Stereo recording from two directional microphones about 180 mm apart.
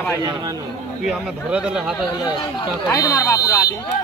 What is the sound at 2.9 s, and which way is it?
Speech, 20° left (ahead or behind).